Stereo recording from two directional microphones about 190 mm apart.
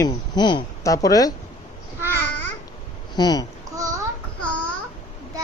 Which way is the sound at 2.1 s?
10° left (ahead or behind).